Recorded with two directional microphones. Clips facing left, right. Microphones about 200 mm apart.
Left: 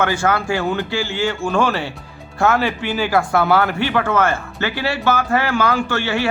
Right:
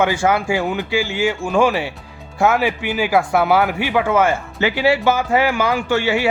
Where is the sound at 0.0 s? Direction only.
15° right (ahead or behind).